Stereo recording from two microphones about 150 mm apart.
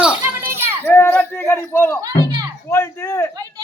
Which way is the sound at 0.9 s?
15° left (ahead or behind).